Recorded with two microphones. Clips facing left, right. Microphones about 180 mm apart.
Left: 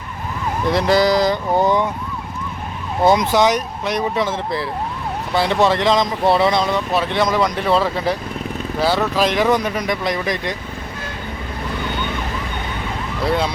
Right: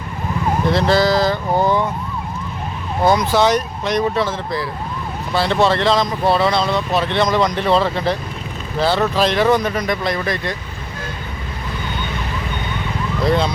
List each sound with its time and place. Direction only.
0.7 s speech: 15° left (ahead or behind)
3.0 s speech: 20° left (ahead or behind)
13.2 s speech: 10° left (ahead or behind)